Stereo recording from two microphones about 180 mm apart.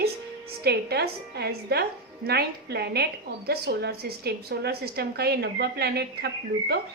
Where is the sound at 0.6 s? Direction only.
60° right (ahead or behind).